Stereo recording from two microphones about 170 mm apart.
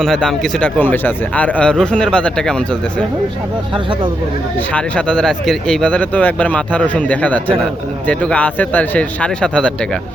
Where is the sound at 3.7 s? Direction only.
30° right (ahead or behind).